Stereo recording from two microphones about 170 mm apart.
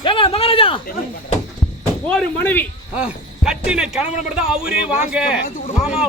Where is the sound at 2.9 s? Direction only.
5° right (ahead or behind).